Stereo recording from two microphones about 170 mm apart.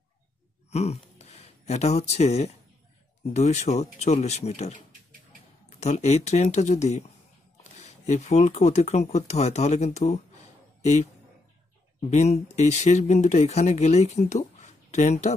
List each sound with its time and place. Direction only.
0.7 s speech: 40° left (ahead or behind)
12.1 s speech: 40° left (ahead or behind)